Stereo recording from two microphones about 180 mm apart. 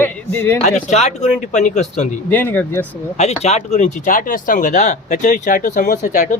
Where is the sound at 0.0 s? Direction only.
10° left (ahead or behind).